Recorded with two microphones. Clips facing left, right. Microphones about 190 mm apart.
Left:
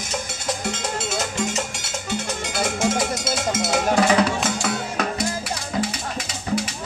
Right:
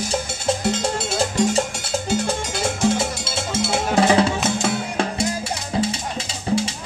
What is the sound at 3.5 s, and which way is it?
Cowbell, 30° right (ahead or behind).